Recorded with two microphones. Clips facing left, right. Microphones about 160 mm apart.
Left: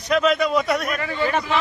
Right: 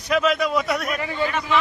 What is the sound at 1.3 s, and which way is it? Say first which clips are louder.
Speech: left 2 dB; 35° left (ahead or behind).